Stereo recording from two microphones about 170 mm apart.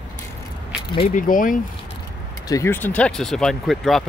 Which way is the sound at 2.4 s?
20° left (ahead or behind).